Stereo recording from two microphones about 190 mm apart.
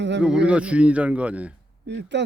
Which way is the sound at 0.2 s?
5° right (ahead or behind).